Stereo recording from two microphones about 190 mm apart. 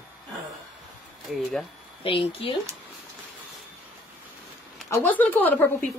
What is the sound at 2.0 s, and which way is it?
Speech, 30° left (ahead or behind).